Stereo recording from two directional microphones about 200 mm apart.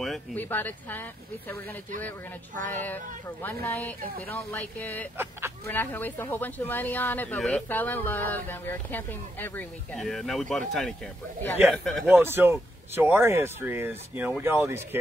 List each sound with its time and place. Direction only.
0.0 s speech: 5° left (ahead or behind)
2.5 s speech: 40° right (ahead or behind)
3.4 s speech: 10° left (ahead or behind)
5.1 s speech: 10° right (ahead or behind)
5.7 s speech: 10° left (ahead or behind)
12.1 s speech: 10° right (ahead or behind)